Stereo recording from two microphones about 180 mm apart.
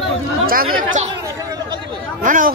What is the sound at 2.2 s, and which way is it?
Speech, 45° right (ahead or behind).